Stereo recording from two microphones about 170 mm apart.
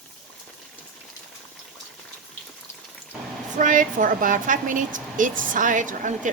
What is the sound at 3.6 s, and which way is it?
A woman's voice, 50° right (ahead or behind).